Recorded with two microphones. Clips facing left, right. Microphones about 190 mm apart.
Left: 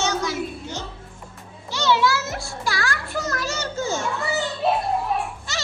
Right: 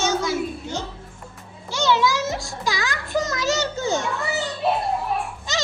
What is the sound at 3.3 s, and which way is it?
Music, 90° right.